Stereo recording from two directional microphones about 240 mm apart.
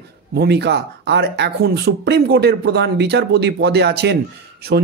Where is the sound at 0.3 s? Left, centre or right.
Right.